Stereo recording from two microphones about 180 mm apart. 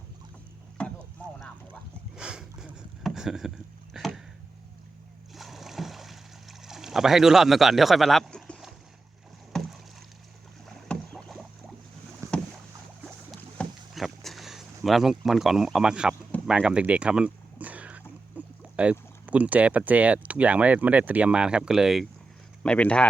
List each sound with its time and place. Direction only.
0.8 s boat: 5° left (ahead or behind)
2.1 s boat: 5° right (ahead or behind)
3.9 s a sound: centre (ahead or behind)
5.3 s rowboat: centre (ahead or behind)
12.2 s boat: 15° right (ahead or behind)
13.6 s a sound: centre (ahead or behind)
18.3 s speech: 5° right (ahead or behind)